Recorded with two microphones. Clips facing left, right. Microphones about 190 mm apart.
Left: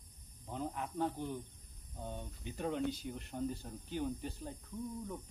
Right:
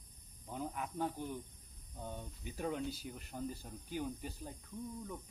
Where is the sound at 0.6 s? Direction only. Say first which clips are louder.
Left 2 dB; 10° right (ahead or behind).